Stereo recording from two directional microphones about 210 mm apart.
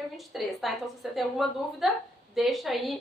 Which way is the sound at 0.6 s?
Centre (ahead or behind).